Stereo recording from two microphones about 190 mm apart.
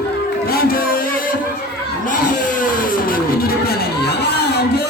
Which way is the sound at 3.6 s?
55° left (ahead or behind).